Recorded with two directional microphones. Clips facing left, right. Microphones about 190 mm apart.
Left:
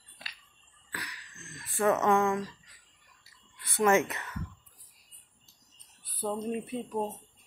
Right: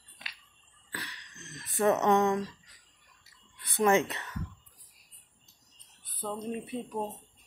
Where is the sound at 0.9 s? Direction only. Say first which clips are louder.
Even; 25° right (ahead or behind).